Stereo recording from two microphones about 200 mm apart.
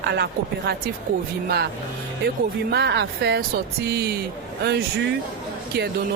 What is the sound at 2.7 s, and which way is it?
Speech, 55° right (ahead or behind).